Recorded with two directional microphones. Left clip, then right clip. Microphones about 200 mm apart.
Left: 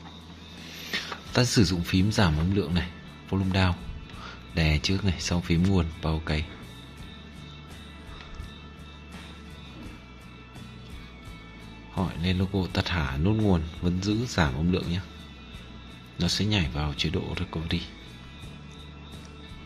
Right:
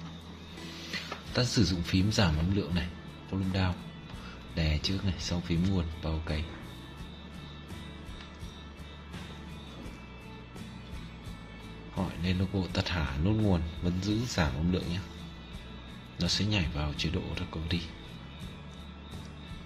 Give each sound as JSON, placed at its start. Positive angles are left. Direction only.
{"t": 1.3, "sound": "speech", "side_deg": 25}
{"t": 12.0, "sound": "speech", "side_deg": 20}
{"t": 16.2, "sound": "speech", "side_deg": 20}